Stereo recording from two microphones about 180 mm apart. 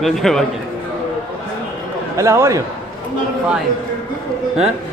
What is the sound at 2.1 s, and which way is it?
Speech, 15° right (ahead or behind).